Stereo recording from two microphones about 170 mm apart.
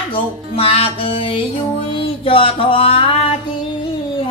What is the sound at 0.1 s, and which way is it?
Music, 35° left (ahead or behind).